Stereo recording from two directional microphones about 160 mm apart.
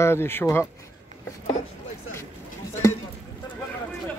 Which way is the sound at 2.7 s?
15° left (ahead or behind).